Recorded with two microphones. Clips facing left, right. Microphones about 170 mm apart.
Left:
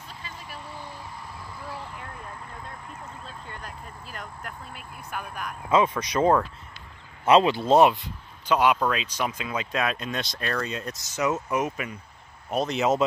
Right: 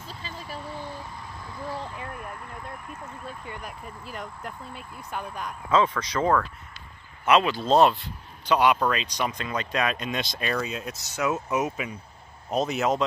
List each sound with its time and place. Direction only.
0.0 s vehicle: 30° right (ahead or behind)
3.3 s speech: 15° right (ahead or behind)
5.7 s speech: 15° left (ahead or behind)
8.5 s speech: 5° left (ahead or behind)